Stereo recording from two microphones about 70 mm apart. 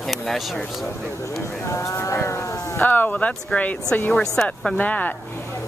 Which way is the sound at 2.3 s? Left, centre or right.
Left.